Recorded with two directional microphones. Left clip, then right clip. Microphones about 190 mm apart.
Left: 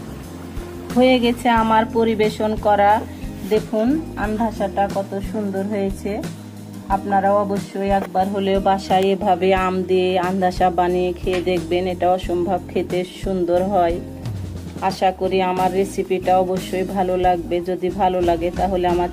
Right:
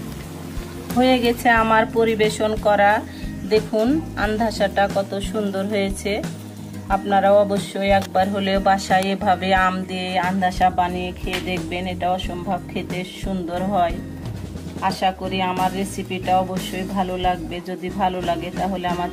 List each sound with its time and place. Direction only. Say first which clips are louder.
1.2 s speech: even; 35° left (ahead or behind)
3.7 s speech: even; 15° left (ahead or behind)
7.9 s speech: right 1 dB; 25° left (ahead or behind); by 13.9 s 40° left (ahead or behind)
15.0 s speech: left 7 dB; 45° left (ahead or behind)